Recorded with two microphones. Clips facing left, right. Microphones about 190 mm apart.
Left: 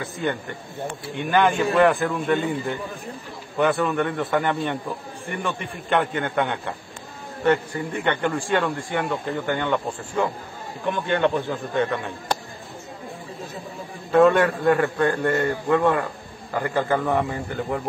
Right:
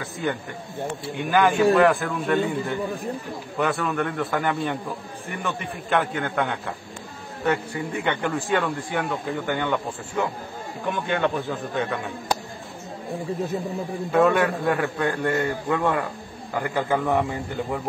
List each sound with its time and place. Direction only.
0.0 s a man's voice: centre (ahead or behind)
3.5 s a man's voice: centre (ahead or behind)
14.1 s a man's voice: 5° right (ahead or behind)